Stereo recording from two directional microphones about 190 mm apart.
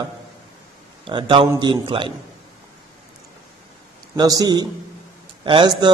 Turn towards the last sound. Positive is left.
turn(degrees=-25)  # may be behind; listen again after turning